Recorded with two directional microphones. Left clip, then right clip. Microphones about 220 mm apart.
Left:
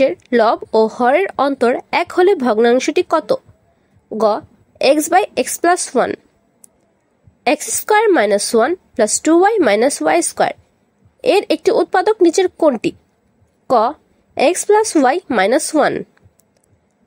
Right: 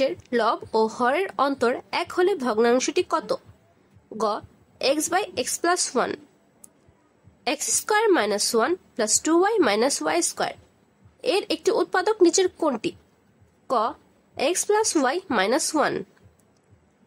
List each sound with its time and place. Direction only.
0.0 s a woman's voice: 25° left (ahead or behind)
7.4 s a woman's voice: 25° left (ahead or behind)